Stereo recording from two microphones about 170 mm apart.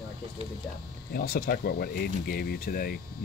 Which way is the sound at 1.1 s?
60° left (ahead or behind).